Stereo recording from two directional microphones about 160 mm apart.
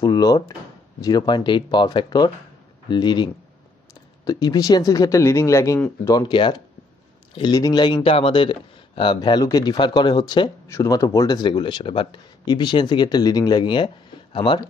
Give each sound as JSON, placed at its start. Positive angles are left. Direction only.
{"t": 0.0, "sound": "speech", "side_deg": 25}